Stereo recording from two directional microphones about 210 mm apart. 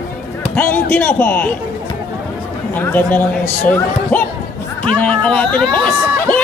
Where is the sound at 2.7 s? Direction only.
10° left (ahead or behind).